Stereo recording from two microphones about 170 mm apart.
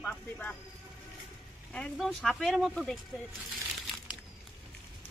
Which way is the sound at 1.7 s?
5° left (ahead or behind).